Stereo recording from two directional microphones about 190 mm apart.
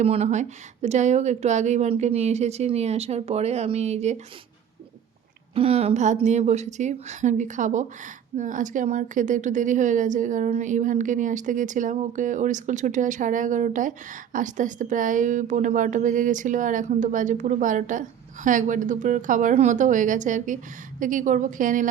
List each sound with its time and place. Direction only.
0.0 s speech: 35° right (ahead or behind)
5.5 s a woman's voice: 30° right (ahead or behind)